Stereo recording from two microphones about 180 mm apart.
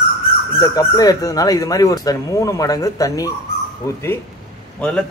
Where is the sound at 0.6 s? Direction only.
20° left (ahead or behind).